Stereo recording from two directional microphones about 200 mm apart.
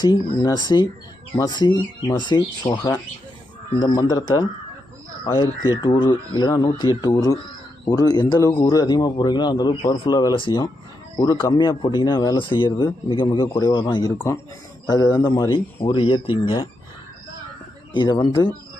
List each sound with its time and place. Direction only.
0.0 s speech: 20° left (ahead or behind)
17.9 s speech: 20° left (ahead or behind)